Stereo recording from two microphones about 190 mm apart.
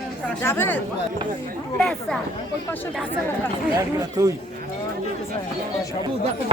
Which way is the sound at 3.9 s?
20° right (ahead or behind).